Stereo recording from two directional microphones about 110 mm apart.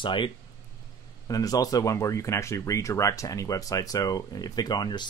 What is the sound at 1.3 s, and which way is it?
Speech, 35° left (ahead or behind).